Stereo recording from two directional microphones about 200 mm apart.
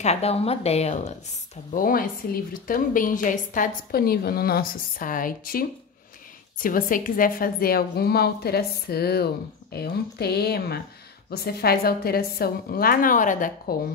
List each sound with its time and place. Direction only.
0.0 s a woman's voice: 30° left (ahead or behind)
1.7 s a woman's voice: 45° left (ahead or behind)